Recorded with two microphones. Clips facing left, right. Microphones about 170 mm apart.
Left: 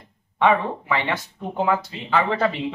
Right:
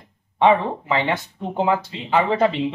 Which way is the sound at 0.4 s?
20° right (ahead or behind).